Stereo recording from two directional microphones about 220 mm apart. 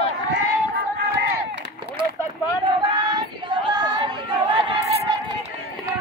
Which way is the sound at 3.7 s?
20° right (ahead or behind).